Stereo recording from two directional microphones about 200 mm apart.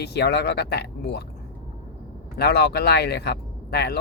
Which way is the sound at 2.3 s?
55° left (ahead or behind).